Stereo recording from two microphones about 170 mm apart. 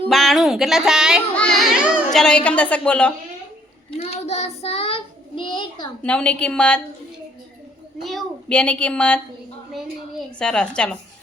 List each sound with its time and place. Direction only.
0.1 s a child's voice: centre (ahead or behind)
3.9 s child singing: 40° left (ahead or behind)
5.4 s a child's voice: 30° left (ahead or behind)
6.0 s a woman's voice: 5° left (ahead or behind)
8.0 s a woman's voice: 5° left (ahead or behind)
10.3 s a child's voice: 5° left (ahead or behind)